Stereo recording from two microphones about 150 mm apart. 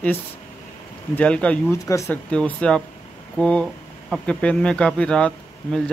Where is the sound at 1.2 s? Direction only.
10° left (ahead or behind).